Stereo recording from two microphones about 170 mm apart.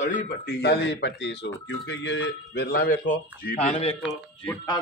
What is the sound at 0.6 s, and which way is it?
Speech, 85° left.